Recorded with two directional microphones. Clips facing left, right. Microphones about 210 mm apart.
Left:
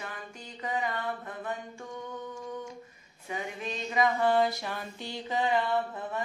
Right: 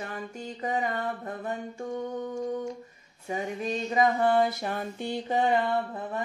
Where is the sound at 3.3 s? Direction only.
40° right (ahead or behind).